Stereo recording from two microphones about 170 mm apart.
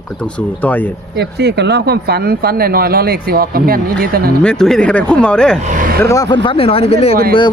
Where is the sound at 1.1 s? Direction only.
80° right; by 4.2 s 60° right (ahead or behind).